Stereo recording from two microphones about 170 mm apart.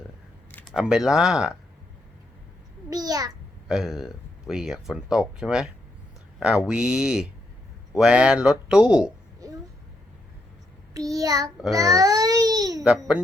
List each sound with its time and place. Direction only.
0.5 s speech: centre (ahead or behind)
2.9 s a child's voice: 20° right (ahead or behind)
3.7 s speech: centre (ahead or behind)
9.4 s a sound: 20° right (ahead or behind)
10.9 s child singing: 20° right (ahead or behind)
11.7 s babbling: 20° right (ahead or behind)